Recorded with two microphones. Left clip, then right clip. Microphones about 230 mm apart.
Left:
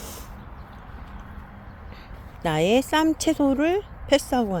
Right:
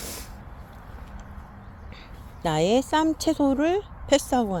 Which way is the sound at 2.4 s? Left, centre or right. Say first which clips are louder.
Left 1 dB; centre.